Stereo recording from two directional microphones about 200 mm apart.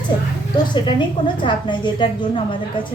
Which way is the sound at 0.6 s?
25° left (ahead or behind).